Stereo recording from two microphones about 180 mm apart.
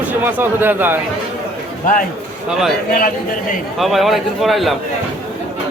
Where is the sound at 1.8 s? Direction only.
45° left (ahead or behind).